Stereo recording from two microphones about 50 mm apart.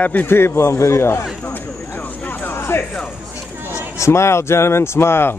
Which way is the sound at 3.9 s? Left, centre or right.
Left.